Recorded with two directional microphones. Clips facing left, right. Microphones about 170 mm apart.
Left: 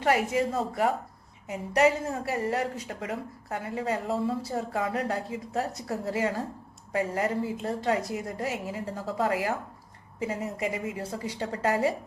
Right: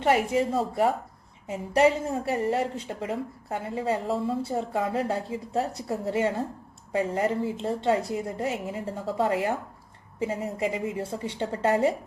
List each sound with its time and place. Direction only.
0.0 s a woman's voice: 25° right (ahead or behind)